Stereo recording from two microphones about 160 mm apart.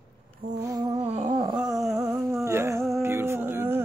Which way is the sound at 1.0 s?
40° right (ahead or behind).